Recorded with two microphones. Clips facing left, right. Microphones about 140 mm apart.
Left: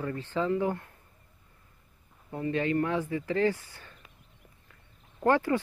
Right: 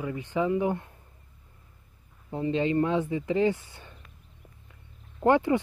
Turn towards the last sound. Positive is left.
turn(degrees=-20)  # may be behind; listen again after turning